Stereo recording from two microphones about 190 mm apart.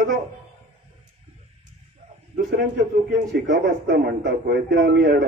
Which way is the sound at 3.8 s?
60° right (ahead or behind).